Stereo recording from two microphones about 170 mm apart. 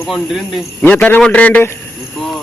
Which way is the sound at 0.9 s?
10° left (ahead or behind).